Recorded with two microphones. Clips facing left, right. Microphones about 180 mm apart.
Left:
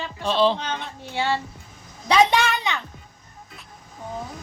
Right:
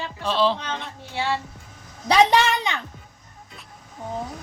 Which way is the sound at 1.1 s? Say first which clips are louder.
Left 1 dB; 30° left (ahead or behind).